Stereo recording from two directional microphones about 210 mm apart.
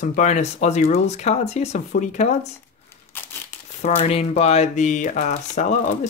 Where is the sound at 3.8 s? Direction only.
35° left (ahead or behind).